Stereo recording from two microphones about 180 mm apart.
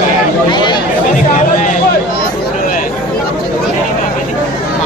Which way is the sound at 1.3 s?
45° left (ahead or behind).